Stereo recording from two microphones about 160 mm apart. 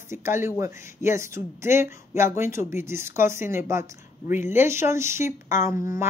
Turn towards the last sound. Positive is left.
turn(degrees=-20)  # may be behind; listen again after turning